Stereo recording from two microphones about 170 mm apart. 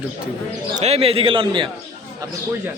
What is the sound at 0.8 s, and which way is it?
Speech, 35° right (ahead or behind).